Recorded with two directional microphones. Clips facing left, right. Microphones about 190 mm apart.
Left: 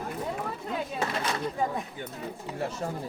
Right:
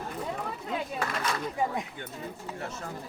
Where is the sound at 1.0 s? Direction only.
30° left (ahead or behind).